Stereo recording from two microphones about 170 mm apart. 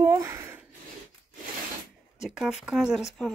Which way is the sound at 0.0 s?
15° right (ahead or behind).